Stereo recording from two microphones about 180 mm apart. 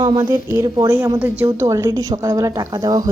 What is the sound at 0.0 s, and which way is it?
A woman's voice, 20° right (ahead or behind).